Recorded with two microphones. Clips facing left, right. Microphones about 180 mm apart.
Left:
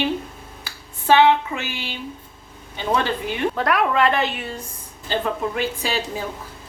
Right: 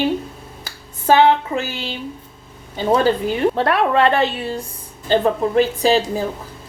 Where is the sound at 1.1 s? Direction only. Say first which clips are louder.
Right 2 dB; 40° right (ahead or behind).